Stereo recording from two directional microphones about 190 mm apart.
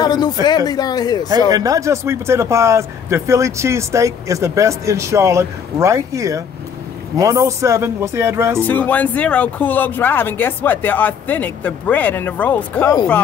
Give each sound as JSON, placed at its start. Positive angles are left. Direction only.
{"t": 0.0, "sound": "speech", "side_deg": 20}
{"t": 1.5, "sound": "speech", "side_deg": -20}
{"t": 8.5, "sound": "speech", "side_deg": 10}